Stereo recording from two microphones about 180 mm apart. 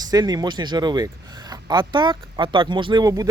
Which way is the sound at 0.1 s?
20° right (ahead or behind).